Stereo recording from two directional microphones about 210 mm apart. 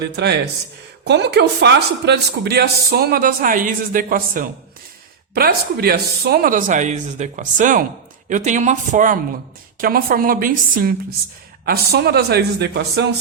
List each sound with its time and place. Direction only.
1.0 s speech: 55° right (ahead or behind)